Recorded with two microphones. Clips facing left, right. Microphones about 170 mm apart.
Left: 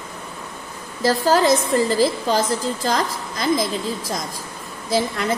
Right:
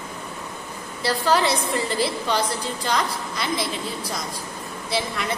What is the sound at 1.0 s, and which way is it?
A woman's voice, 40° left (ahead or behind).